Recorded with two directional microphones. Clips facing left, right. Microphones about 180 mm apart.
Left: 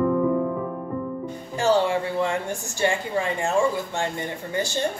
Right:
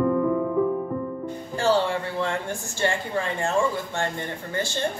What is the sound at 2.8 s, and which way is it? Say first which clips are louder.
Speech: left 2 dB; 15° left (ahead or behind).